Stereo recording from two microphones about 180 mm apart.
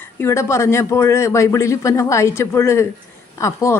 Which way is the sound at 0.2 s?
15° left (ahead or behind).